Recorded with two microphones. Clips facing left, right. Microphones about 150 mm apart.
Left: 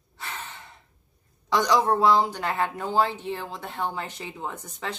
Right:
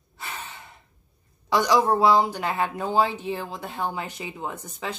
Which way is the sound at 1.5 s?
10° right (ahead or behind).